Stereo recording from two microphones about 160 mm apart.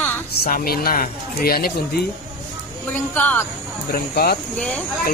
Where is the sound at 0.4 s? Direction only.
70° left (ahead or behind).